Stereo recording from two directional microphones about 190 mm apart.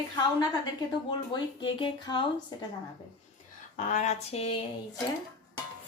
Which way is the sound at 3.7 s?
40° left (ahead or behind).